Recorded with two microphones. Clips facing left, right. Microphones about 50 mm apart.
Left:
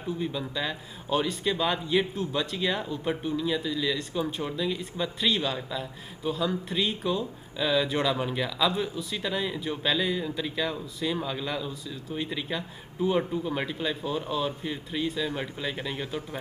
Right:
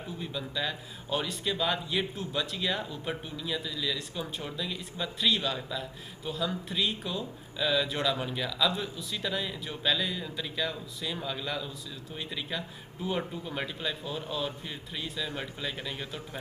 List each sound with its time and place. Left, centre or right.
0.2 s a man's voice: centre